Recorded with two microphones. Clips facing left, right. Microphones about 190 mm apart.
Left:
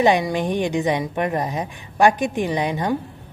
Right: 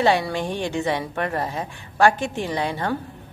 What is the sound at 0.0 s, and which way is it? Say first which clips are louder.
A woman's voice: left 3 dB; 15° left (ahead or behind).